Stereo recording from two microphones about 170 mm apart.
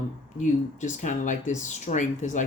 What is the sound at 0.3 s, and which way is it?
Speech, 45° left (ahead or behind).